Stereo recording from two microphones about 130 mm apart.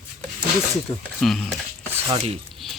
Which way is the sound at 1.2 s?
Centre (ahead or behind).